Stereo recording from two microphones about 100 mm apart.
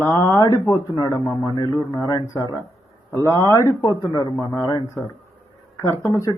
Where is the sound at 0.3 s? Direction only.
45° left (ahead or behind).